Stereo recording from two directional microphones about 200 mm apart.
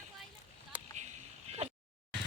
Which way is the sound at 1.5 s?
30° right (ahead or behind).